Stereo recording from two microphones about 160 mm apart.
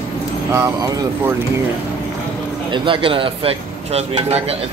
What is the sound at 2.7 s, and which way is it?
Speech, 30° right (ahead or behind).